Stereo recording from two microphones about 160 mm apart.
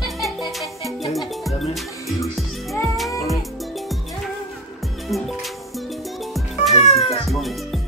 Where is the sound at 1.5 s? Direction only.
40° left (ahead or behind).